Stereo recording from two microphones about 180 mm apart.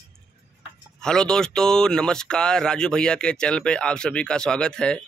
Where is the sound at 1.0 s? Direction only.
5° left (ahead or behind).